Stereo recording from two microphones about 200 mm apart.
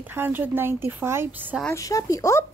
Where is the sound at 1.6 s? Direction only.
15° left (ahead or behind).